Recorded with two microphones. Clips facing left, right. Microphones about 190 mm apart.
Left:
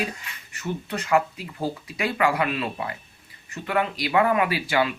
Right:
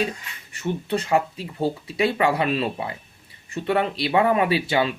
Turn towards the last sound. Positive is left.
turn(degrees=-25)  # may be behind; listen again after turning